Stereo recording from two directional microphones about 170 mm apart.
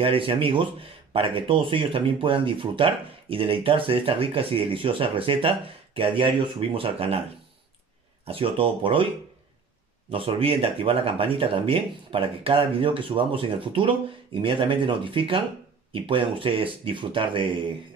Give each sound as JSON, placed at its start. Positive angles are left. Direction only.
{"t": 0.0, "sound": "speech", "side_deg": -30}
{"t": 8.3, "sound": "speech", "side_deg": -30}
{"t": 10.1, "sound": "speech", "side_deg": -35}